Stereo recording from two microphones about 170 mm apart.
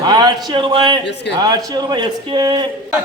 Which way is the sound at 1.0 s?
90° left.